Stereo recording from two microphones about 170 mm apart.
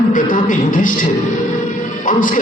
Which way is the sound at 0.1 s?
50° left (ahead or behind).